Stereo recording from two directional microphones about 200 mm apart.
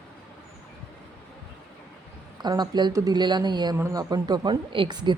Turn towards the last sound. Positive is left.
turn(degrees=-20)  # may be behind; listen again after turning